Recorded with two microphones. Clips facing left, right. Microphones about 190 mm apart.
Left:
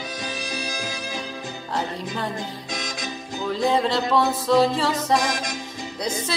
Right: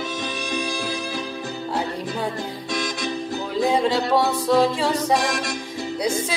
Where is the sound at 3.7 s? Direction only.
10° right (ahead or behind).